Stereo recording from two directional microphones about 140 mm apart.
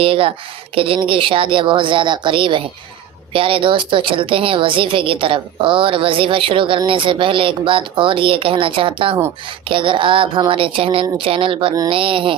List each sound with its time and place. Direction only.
0.0 s a woman's voice: 40° right (ahead or behind)